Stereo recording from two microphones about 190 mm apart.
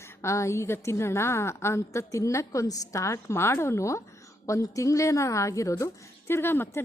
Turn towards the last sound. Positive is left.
turn(degrees=10)  # may be behind; listen again after turning